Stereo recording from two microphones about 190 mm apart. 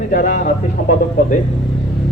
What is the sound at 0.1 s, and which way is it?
A man's voice, 45° left (ahead or behind).